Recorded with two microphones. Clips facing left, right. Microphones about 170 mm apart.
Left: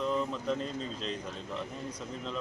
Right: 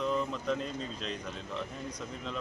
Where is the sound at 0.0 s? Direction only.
Centre (ahead or behind).